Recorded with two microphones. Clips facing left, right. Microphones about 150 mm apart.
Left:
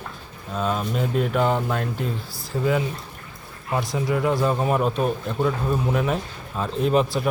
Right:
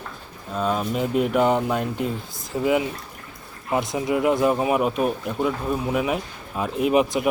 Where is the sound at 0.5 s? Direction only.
5° right (ahead or behind).